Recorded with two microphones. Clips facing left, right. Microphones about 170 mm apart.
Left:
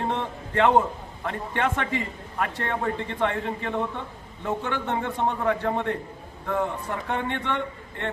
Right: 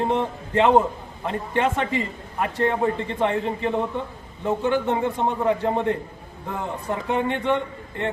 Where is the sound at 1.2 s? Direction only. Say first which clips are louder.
Right 4 dB; 20° right (ahead or behind).